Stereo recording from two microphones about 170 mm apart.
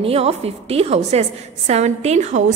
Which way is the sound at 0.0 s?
35° right (ahead or behind).